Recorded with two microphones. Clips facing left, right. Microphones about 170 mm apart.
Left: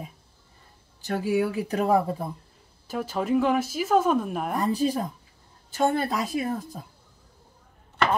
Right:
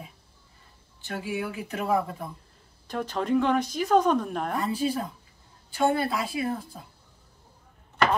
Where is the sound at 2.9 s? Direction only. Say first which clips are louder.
Left 1 dB; 5° left (ahead or behind).